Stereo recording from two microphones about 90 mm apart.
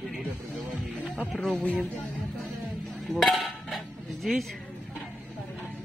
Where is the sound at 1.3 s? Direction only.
Centre (ahead or behind).